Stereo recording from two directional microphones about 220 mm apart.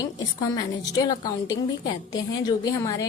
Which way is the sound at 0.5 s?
15° left (ahead or behind).